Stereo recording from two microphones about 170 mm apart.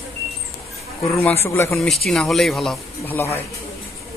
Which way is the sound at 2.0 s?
Centre (ahead or behind).